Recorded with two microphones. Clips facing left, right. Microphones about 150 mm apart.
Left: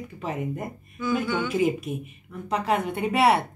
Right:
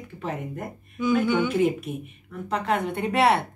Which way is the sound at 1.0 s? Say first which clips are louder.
Right 4 dB; 20° right (ahead or behind).